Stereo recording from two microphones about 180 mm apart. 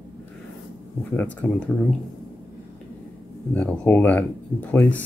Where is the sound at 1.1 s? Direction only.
5° left (ahead or behind).